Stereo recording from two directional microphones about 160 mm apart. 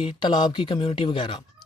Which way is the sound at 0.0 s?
30° left (ahead or behind).